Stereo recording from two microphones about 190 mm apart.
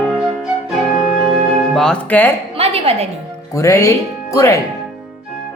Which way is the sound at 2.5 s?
30° right (ahead or behind).